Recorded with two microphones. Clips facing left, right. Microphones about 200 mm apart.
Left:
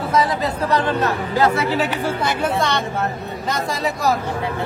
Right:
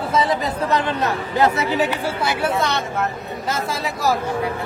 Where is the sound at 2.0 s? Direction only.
5° right (ahead or behind).